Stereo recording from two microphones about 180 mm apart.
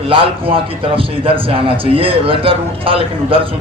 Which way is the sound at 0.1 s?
30° right (ahead or behind).